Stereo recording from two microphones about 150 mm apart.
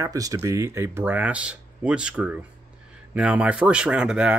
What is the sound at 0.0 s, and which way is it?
Speech, 20° right (ahead or behind).